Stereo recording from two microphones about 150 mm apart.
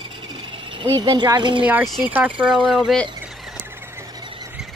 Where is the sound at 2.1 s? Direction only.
10° right (ahead or behind).